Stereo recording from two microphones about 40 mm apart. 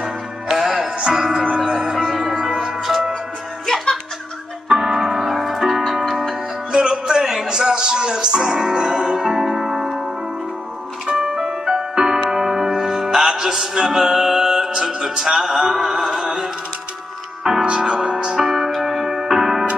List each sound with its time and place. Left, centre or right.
0.6 s music: centre
2.4 s music: centre
2.8 s music: centre
4.6 s music: centre
11.1 s music: centre
15.6 s a sound: centre
17.6 s music: right
18.4 s music: centre